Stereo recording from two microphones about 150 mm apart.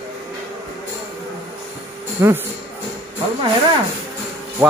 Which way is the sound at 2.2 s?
20° right (ahead or behind).